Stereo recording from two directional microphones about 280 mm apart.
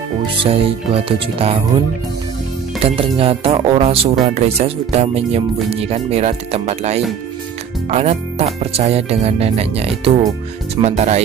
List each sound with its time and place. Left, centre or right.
0.4 s speech: centre
2.8 s speech: centre